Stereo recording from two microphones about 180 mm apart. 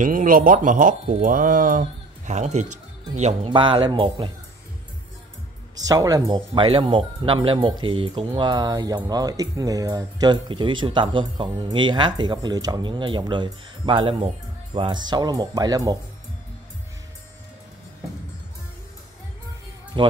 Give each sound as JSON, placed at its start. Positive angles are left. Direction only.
{"t": 0.0, "sound": "speech", "side_deg": -50}
{"t": 5.9, "sound": "speech", "side_deg": -20}
{"t": 19.9, "sound": "speech", "side_deg": -25}